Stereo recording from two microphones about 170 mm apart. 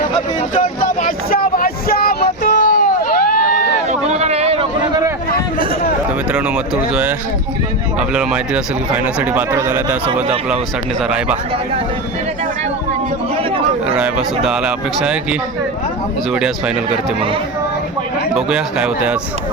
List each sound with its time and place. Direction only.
0.6 s vehicle: 55° left (ahead or behind)
4.0 s a sound: 40° right (ahead or behind)
7.9 s a man's voice: 5° right (ahead or behind)
13.9 s a man's voice: 5° right (ahead or behind)
18.3 s a man's voice: 5° right (ahead or behind)